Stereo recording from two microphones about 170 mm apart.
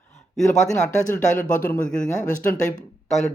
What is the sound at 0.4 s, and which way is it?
Speech, 45° left (ahead or behind).